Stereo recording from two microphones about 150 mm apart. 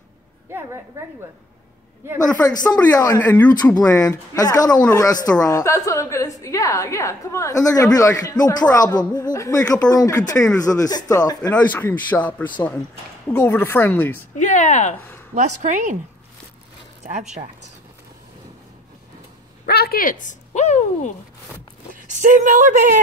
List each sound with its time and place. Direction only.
2.3 s a woman's voice: 25° left (ahead or behind)
11.5 s speech: 10° left (ahead or behind)
14.4 s speech: 55° left (ahead or behind)
15.3 s speech: 55° right (ahead or behind)
17.0 s speech: 50° right (ahead or behind)
19.6 s speech: 85° left; by 21.1 s 50° left (ahead or behind)
21.9 s speech: 55° right (ahead or behind)